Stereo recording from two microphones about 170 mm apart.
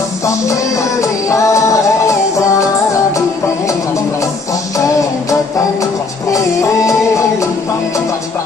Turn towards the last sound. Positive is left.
turn(degrees=20)  # may be behind; listen again after turning